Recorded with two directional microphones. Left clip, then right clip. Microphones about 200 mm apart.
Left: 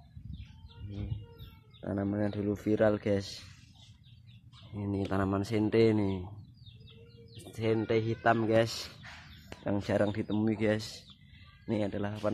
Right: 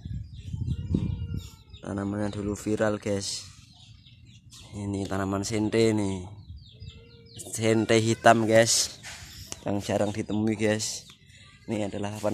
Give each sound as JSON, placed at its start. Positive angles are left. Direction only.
{"t": 1.8, "sound": "speech", "side_deg": 0}
{"t": 4.7, "sound": "speech", "side_deg": -5}
{"t": 7.5, "sound": "speech", "side_deg": -30}
{"t": 9.8, "sound": "speech", "side_deg": 0}